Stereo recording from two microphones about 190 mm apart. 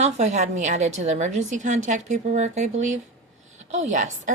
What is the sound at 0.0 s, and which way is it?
A woman's voice, 35° right (ahead or behind).